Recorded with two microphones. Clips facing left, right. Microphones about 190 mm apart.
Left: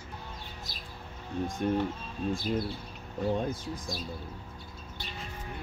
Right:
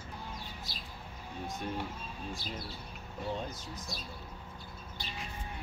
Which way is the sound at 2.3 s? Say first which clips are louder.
Left 14 dB; 50° left (ahead or behind).